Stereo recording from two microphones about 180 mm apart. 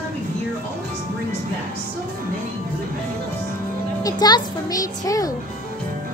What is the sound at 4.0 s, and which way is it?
A child's voice, 20° left (ahead or behind).